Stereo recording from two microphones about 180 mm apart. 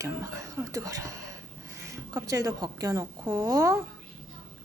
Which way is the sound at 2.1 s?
20° right (ahead or behind).